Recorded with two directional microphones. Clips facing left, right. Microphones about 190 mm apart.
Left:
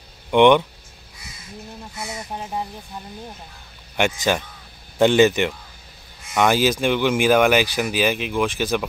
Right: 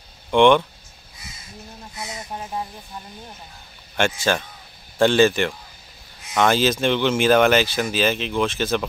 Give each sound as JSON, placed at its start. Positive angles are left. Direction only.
{"t": 0.3, "sound": "speech", "side_deg": 15}
{"t": 3.9, "sound": "speech", "side_deg": 15}